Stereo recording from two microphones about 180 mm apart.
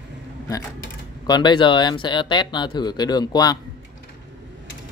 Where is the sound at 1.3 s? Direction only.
25° left (ahead or behind).